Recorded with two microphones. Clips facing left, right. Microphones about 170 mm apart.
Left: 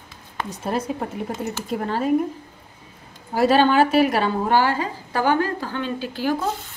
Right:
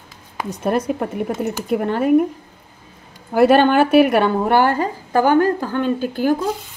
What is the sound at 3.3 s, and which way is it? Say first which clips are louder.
A woman's voice: right 4 dB; 60° right (ahead or behind).